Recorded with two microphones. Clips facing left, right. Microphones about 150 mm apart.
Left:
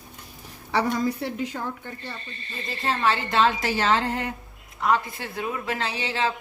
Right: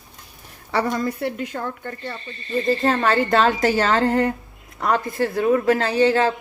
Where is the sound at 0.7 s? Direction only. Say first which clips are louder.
Right 2 dB; 60° right (ahead or behind).